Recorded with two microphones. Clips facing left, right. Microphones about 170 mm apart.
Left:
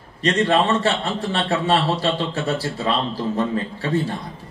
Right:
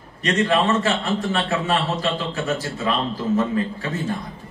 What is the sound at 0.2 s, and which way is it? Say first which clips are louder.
A man's voice: left 1 dB; 30° left (ahead or behind).